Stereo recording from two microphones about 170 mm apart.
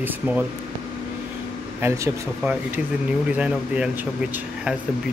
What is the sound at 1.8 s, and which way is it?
Speech, 20° right (ahead or behind).